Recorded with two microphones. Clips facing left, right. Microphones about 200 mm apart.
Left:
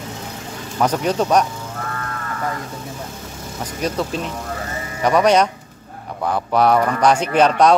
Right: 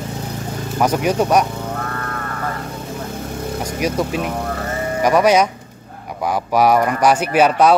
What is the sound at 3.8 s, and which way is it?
Speech, 10° right (ahead or behind).